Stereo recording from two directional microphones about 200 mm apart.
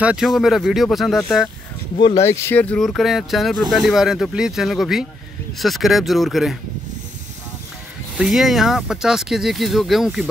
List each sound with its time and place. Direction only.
0.0 s speech: 5° right (ahead or behind)
2.0 s speech: 25° left (ahead or behind)
2.2 s speech: 10° left (ahead or behind)
8.2 s speech: centre (ahead or behind)